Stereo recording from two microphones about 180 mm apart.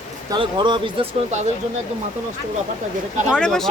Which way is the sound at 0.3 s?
25° right (ahead or behind).